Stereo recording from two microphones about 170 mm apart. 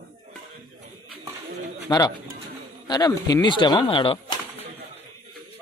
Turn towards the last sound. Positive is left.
turn(degrees=30)  # may be behind; listen again after turning